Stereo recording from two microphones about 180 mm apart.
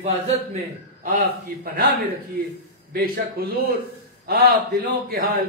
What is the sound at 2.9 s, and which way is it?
A man's voice, 55° right (ahead or behind).